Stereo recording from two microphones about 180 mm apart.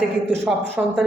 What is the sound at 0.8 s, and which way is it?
Speech, 10° right (ahead or behind).